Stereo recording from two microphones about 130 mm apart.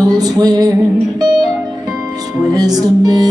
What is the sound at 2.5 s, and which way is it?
Speech, 30° right (ahead or behind).